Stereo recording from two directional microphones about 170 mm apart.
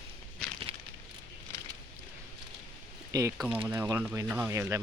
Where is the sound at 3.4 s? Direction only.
5° right (ahead or behind).